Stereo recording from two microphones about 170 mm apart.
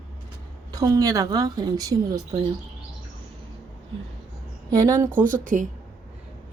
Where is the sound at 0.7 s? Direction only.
20° right (ahead or behind).